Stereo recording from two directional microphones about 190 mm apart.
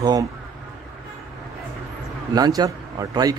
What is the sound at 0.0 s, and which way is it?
Speech, 20° right (ahead or behind).